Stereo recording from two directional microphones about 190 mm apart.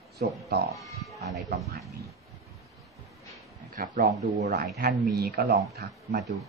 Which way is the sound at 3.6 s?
45° right (ahead or behind).